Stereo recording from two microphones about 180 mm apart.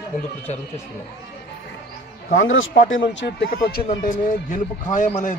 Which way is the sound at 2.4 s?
90° left.